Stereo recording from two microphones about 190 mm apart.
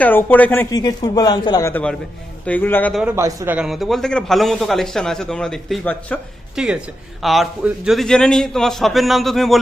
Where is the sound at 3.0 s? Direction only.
10° right (ahead or behind).